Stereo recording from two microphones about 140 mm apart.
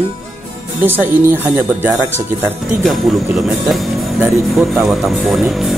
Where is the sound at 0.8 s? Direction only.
15° right (ahead or behind).